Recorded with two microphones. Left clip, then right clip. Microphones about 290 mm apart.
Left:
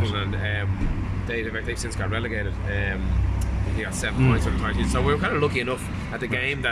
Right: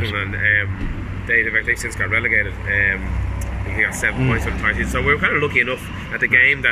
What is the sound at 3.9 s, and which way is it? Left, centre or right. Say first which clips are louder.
Speech: right 5 dB; centre.